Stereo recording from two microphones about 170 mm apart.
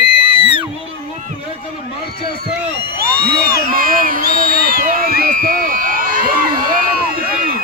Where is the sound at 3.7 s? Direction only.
55° right (ahead or behind).